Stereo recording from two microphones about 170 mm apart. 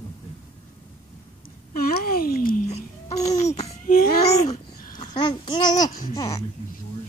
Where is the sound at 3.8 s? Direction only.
55° left (ahead or behind).